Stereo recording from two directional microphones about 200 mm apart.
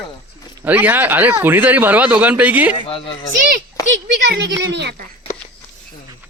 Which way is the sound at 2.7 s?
25° left (ahead or behind).